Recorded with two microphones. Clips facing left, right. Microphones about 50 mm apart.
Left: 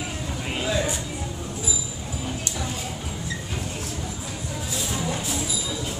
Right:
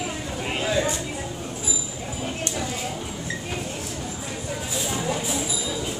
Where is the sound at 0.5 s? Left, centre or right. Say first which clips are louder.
Right 1 dB; centre.